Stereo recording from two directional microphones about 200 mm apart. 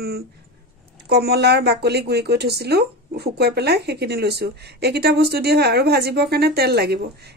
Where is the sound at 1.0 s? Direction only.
55° right (ahead or behind).